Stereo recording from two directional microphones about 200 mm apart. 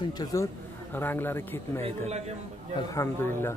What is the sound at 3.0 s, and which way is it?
Speech, 15° left (ahead or behind).